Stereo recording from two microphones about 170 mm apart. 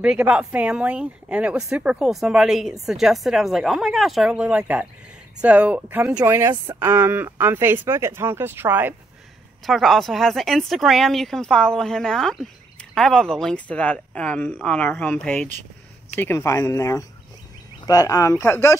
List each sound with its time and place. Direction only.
0.0 s a woman's voice: 5° right (ahead or behind)
9.7 s a woman's voice: centre (ahead or behind); by 18.8 s 15° left (ahead or behind)